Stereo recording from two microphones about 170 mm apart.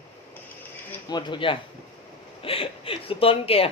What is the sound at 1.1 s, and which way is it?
Speech, 30° left (ahead or behind).